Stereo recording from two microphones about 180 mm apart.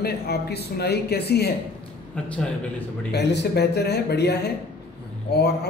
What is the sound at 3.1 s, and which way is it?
A man's voice, 70° left (ahead or behind).